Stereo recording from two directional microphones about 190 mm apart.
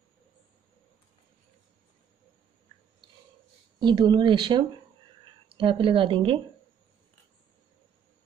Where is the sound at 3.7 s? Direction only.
25° right (ahead or behind).